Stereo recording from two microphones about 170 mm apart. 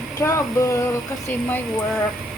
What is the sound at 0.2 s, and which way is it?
Speech, 20° left (ahead or behind).